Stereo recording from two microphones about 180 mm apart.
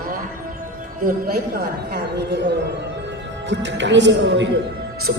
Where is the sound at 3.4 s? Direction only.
90° right.